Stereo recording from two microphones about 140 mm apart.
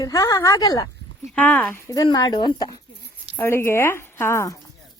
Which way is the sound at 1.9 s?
25° left (ahead or behind).